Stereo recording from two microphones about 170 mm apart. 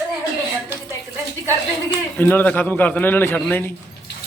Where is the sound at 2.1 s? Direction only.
10° left (ahead or behind).